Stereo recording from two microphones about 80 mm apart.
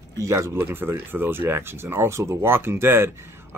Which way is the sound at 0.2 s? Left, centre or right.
Right.